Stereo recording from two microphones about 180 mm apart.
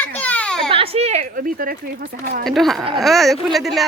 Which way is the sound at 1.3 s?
55° right (ahead or behind).